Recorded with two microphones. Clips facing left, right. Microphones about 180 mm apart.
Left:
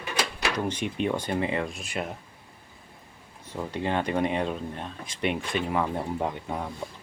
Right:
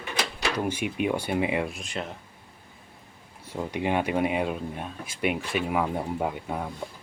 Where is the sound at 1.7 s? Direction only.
10° left (ahead or behind).